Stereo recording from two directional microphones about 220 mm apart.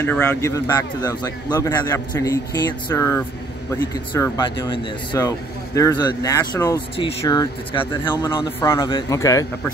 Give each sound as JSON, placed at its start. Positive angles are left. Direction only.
{"t": 0.0, "sound": "speech", "side_deg": 5}